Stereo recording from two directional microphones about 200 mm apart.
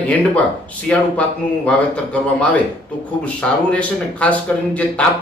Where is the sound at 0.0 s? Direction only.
5° left (ahead or behind).